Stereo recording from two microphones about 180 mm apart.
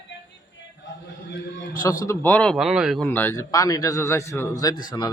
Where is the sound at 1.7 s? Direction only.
20° left (ahead or behind); by 3.1 s centre (ahead or behind).